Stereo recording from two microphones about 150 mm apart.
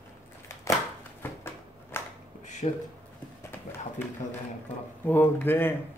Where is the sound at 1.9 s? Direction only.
15° left (ahead or behind).